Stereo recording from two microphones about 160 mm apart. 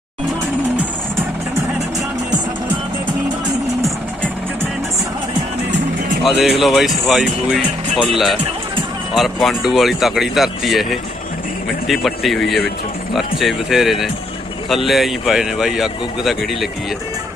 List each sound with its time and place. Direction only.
6.4 s a man's voice: centre (ahead or behind)
9.1 s a man's voice: centre (ahead or behind)
11.9 s a man's voice: centre (ahead or behind)